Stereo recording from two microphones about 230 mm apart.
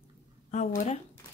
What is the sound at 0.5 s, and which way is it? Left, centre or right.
Speech, left.